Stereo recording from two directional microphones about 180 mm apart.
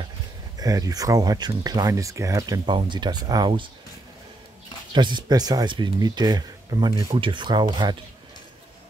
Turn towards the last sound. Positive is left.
turn(degrees=-25)  # may be behind; listen again after turning